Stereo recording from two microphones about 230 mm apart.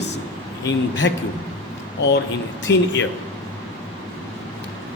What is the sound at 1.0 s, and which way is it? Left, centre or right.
Speech, left.